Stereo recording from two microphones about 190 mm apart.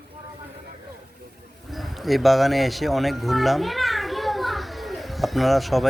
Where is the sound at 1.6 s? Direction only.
Centre (ahead or behind).